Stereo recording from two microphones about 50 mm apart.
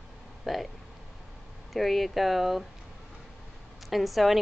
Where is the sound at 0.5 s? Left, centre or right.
Centre.